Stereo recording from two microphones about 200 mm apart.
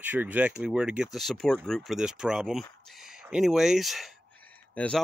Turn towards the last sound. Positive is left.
turn(degrees=5)  # may be behind; listen again after turning